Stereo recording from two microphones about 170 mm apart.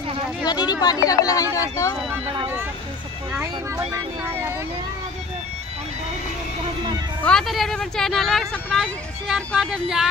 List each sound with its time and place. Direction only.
0.5 s speech: 25° left (ahead or behind)
3.9 s speech: 15° right (ahead or behind)
7.2 s speech: centre (ahead or behind)